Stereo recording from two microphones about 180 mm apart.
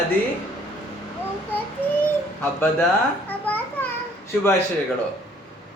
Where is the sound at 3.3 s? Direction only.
10° left (ahead or behind).